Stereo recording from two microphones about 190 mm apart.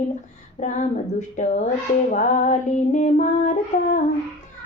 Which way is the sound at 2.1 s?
40° left (ahead or behind).